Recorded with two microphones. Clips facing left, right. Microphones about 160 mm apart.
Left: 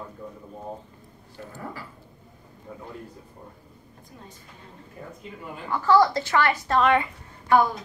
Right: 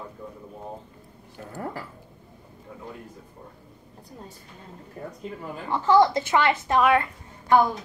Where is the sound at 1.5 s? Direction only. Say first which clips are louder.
Right 5 dB; 45° right (ahead or behind).